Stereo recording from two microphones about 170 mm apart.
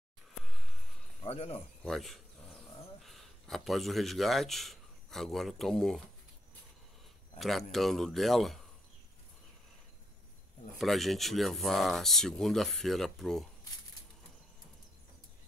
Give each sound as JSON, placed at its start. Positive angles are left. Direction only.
{"t": 0.5, "sound": "a sound", "side_deg": 0}
{"t": 1.2, "sound": "speech", "side_deg": 40}
{"t": 1.9, "sound": "speech", "side_deg": 0}
{"t": 7.3, "sound": "speech", "side_deg": 0}
{"t": 10.8, "sound": "speech", "side_deg": 0}